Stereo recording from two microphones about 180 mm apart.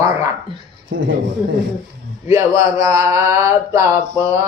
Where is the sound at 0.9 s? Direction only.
90° right.